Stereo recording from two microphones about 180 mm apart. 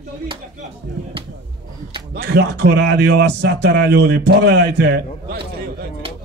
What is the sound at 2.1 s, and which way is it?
Speech, 65° right (ahead or behind).